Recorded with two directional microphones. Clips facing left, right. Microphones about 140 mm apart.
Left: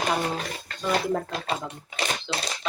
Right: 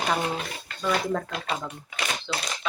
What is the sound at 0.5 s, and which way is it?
Speech, 40° left (ahead or behind).